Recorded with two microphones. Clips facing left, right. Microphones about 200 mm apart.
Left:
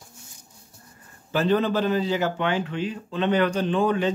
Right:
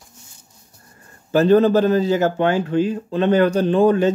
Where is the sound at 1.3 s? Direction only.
45° right (ahead or behind).